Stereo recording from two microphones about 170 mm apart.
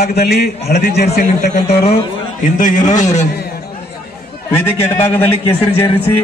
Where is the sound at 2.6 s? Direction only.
50° left (ahead or behind).